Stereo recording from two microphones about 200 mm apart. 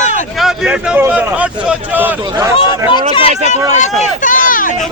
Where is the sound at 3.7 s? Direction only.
35° left (ahead or behind).